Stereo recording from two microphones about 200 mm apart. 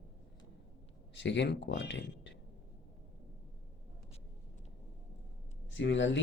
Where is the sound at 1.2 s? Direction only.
60° left (ahead or behind).